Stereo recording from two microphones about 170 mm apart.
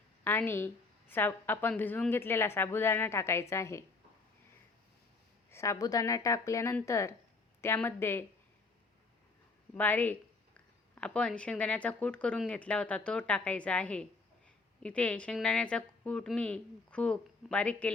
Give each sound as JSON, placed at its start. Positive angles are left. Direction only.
{"t": 0.3, "sound": "speech", "side_deg": 10}
{"t": 5.5, "sound": "speech", "side_deg": 15}
{"t": 9.7, "sound": "speech", "side_deg": 10}